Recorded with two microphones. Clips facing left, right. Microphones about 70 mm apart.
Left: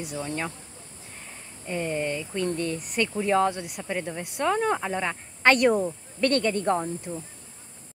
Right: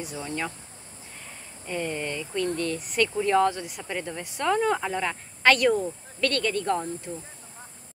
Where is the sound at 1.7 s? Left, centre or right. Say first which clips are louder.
Left 2 dB; centre.